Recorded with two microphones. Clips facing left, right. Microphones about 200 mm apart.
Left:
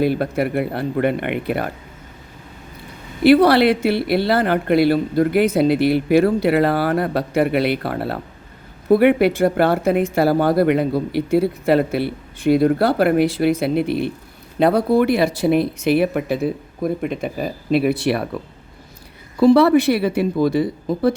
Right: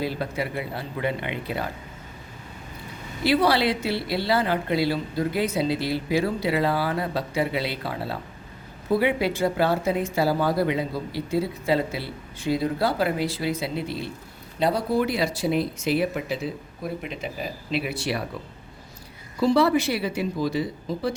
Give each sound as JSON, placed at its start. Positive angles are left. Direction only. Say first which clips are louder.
{"t": 0.0, "sound": "speech", "louder": "left 9 dB", "side_deg": 60}
{"t": 3.2, "sound": "speech", "louder": "left 9 dB", "side_deg": 60}
{"t": 19.4, "sound": "speech", "louder": "left 8 dB", "side_deg": 60}